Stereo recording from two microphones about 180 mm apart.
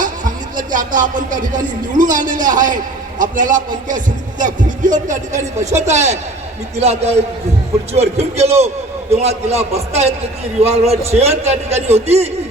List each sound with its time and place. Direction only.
0.0 s music: 45° right (ahead or behind)
2.0 s a man's voice: 45° right (ahead or behind)